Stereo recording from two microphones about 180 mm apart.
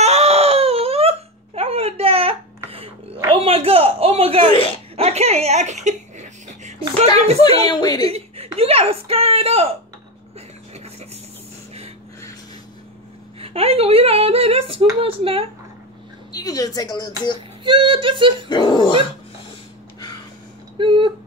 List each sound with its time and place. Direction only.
0.0 s baby cry: 35° right (ahead or behind)
3.2 s a sound: 30° right (ahead or behind)
7.2 s speech: 35° right (ahead or behind)
7.7 s speech: 20° left (ahead or behind)
8.0 s chuckle: 35° right (ahead or behind)
8.5 s speech: 35° right (ahead or behind)
13.4 s speech: 35° right (ahead or behind)
16.3 s speech: 20° left (ahead or behind)
17.6 s music: 30° right (ahead or behind)
18.5 s speech: 25° left (ahead or behind)
20.7 s a sound: 30° right (ahead or behind)